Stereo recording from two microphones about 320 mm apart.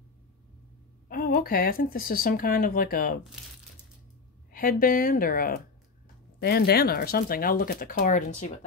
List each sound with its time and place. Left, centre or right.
1.0 s speech: left
4.5 s speech: left